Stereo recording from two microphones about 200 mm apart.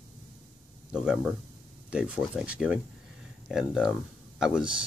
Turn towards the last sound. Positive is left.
turn(degrees=-5)  # may be behind; listen again after turning